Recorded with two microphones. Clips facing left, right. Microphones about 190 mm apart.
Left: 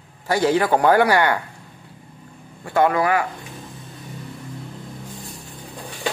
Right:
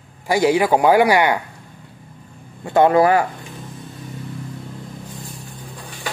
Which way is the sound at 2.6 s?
25° right (ahead or behind).